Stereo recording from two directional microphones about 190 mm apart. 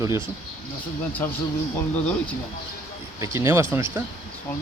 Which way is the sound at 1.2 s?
10° left (ahead or behind).